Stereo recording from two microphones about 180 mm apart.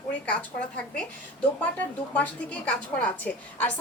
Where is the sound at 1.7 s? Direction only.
10° left (ahead or behind).